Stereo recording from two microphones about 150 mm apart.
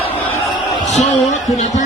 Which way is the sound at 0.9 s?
50° left (ahead or behind).